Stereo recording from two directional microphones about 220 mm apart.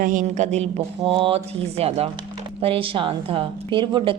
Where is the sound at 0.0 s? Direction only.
35° right (ahead or behind).